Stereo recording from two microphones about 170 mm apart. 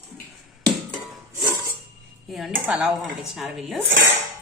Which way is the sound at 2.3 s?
Centre (ahead or behind).